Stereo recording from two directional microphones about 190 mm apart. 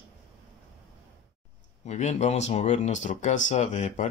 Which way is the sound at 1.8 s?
40° left (ahead or behind).